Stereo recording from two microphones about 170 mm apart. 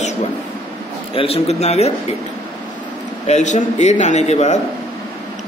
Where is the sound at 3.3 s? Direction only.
45° left (ahead or behind).